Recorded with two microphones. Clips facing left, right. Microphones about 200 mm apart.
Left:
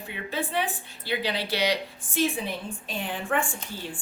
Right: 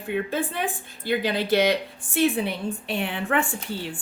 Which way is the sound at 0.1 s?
50° right (ahead or behind).